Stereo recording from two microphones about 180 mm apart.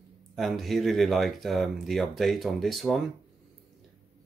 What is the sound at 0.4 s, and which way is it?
Speech, centre (ahead or behind).